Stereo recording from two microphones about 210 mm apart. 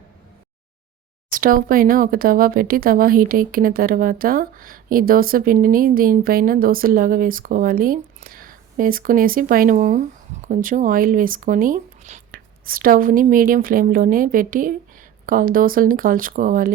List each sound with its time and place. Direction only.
1.3 s speech: 40° right (ahead or behind)